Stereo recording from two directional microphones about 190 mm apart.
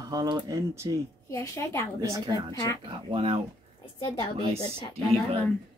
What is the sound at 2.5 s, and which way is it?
Speech, 20° left (ahead or behind).